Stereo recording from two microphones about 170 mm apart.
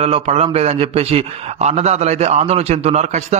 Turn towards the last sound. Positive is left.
turn(degrees=-40)  # may be behind; listen again after turning